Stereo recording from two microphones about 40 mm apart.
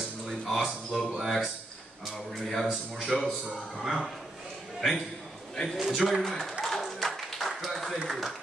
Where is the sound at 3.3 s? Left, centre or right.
Centre.